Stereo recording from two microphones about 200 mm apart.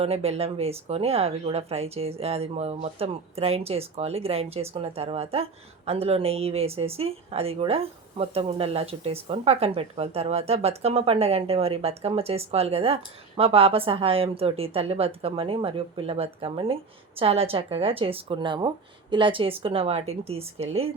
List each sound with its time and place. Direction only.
0.0 s speech: 30° right (ahead or behind)